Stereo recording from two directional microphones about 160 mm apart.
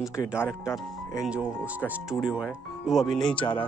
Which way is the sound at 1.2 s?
5° right (ahead or behind).